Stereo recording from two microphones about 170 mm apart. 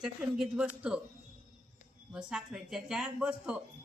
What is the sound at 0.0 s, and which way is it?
Speech, 5° right (ahead or behind).